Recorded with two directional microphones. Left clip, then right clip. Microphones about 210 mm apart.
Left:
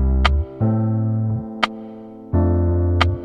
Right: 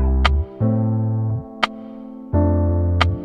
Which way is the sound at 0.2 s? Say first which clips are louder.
Even; centre (ahead or behind).